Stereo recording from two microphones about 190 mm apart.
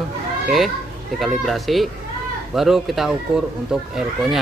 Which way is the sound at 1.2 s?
Centre (ahead or behind).